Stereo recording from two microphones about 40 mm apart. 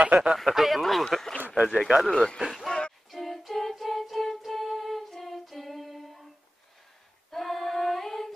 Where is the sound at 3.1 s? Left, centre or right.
Centre.